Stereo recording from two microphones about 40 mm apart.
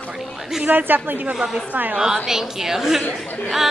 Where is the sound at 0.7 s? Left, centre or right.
Right.